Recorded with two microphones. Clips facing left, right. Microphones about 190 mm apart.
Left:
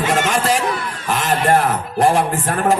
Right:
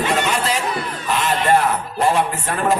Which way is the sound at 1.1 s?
85° left.